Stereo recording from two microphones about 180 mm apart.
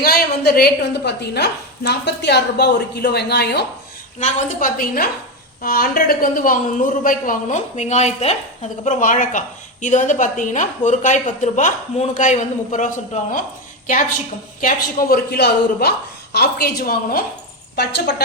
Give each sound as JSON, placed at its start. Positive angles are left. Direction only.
{"t": 0.0, "sound": "a woman's voice", "side_deg": 60}
{"t": 4.2, "sound": "a woman's voice", "side_deg": 45}
{"t": 14.6, "sound": "a woman's voice", "side_deg": 50}
{"t": 17.7, "sound": "a woman's voice", "side_deg": 65}